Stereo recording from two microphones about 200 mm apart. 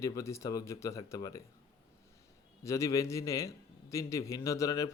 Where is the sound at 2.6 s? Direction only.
15° left (ahead or behind).